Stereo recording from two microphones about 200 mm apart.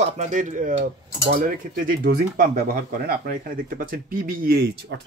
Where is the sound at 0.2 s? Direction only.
40° right (ahead or behind).